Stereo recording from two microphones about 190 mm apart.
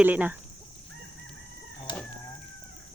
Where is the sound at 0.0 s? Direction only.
10° right (ahead or behind).